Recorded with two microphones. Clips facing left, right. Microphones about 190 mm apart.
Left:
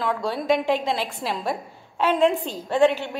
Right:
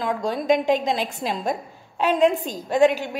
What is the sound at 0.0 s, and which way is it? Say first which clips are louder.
Speech: right 1 dB; 20° right (ahead or behind).